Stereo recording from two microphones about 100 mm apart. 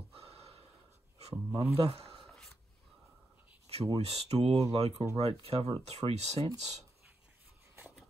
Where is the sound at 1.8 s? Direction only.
80° right.